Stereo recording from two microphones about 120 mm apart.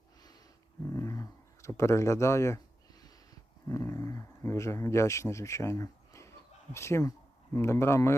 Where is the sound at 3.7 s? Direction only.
25° left (ahead or behind).